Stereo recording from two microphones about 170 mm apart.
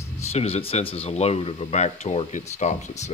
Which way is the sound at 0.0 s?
40° left (ahead or behind).